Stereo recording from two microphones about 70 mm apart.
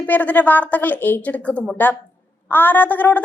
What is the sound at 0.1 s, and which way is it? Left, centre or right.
A woman's voice, left.